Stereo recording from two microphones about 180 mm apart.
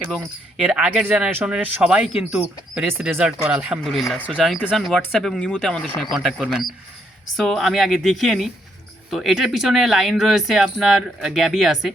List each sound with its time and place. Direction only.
0.1 s speech: centre (ahead or behind)